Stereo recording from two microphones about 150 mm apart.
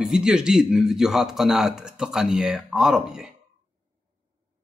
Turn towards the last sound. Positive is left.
turn(degrees=-5)  # may be behind; listen again after turning